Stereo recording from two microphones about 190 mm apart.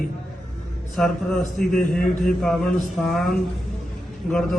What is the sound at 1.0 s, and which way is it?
Mantra, centre (ahead or behind).